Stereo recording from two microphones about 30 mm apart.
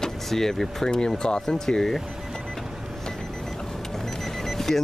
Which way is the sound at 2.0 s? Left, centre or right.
Centre.